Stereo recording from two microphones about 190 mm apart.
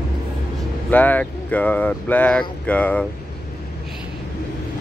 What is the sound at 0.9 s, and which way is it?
Speech, 10° left (ahead or behind).